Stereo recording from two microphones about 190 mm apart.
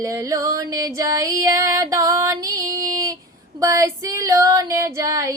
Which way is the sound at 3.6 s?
15° right (ahead or behind).